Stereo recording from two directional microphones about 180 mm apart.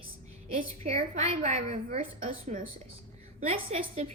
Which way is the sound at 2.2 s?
45° right (ahead or behind).